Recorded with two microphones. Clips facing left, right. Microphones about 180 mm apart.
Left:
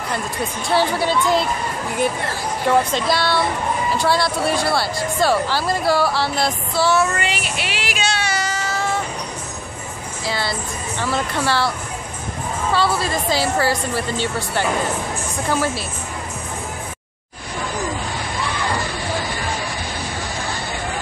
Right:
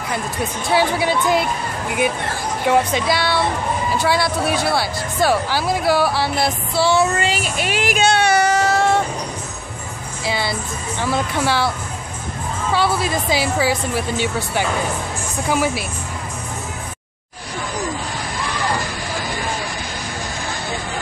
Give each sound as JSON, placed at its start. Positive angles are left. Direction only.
{"t": 0.7, "sound": "speech", "side_deg": 0}
{"t": 2.6, "sound": "speech", "side_deg": -5}
{"t": 7.2, "sound": "child singing", "side_deg": -40}
{"t": 11.0, "sound": "speech", "side_deg": -15}
{"t": 12.7, "sound": "speech", "side_deg": -15}